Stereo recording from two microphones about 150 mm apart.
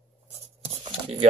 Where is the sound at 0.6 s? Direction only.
45° right (ahead or behind).